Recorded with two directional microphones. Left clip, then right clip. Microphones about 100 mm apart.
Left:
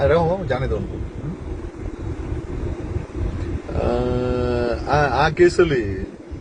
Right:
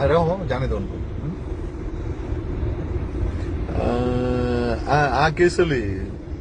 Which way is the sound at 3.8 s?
20° right (ahead or behind).